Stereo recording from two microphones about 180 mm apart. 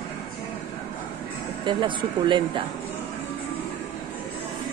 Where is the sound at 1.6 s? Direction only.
25° right (ahead or behind).